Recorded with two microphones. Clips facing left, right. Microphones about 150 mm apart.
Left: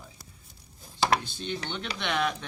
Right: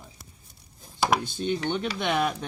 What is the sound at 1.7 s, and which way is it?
Speech, 45° right (ahead or behind).